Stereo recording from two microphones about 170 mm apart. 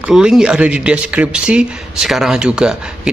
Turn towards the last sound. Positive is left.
turn(degrees=-5)  # may be behind; listen again after turning